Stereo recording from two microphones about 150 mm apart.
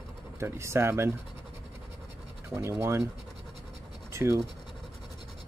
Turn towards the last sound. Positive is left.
turn(degrees=-20)  # may be behind; listen again after turning